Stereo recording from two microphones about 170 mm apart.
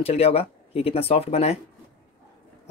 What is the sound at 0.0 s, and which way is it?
Speech, 35° left (ahead or behind).